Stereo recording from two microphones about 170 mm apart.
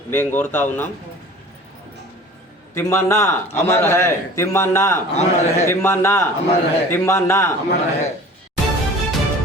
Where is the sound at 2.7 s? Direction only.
15° left (ahead or behind).